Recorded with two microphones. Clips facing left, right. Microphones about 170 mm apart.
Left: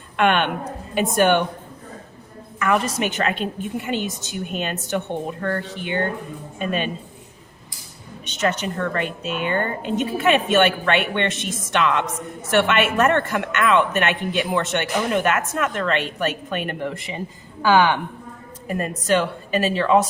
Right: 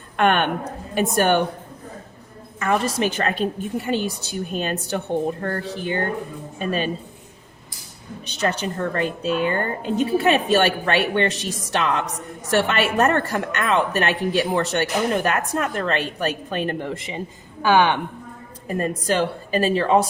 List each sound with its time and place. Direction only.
0.2 s a woman's voice: 45° right (ahead or behind)
2.6 s a woman's voice: 30° right (ahead or behind)
8.4 s a woman's voice: 35° right (ahead or behind)
18.8 s a woman's voice: 35° right (ahead or behind)